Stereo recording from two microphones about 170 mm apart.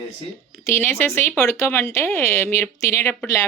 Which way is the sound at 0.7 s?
15° left (ahead or behind).